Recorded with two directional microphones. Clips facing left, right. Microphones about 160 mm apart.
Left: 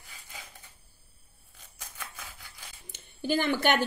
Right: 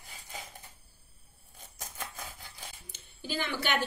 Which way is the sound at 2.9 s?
50° left (ahead or behind).